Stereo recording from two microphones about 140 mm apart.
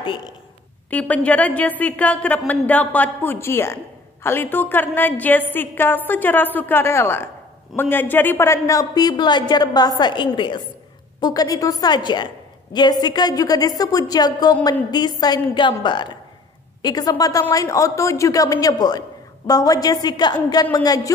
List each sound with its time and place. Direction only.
0.8 s a woman's voice: 10° left (ahead or behind); by 21.1 s 25° left (ahead or behind)